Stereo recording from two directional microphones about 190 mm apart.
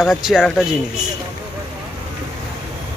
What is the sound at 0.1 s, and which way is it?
Speech, centre (ahead or behind).